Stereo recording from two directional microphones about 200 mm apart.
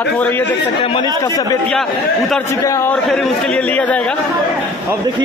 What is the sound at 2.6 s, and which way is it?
A man's voice, 15° left (ahead or behind).